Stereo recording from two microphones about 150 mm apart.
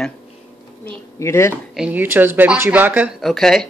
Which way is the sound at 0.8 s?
20° left (ahead or behind).